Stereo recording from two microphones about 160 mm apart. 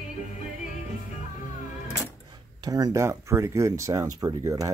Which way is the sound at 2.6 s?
25° right (ahead or behind).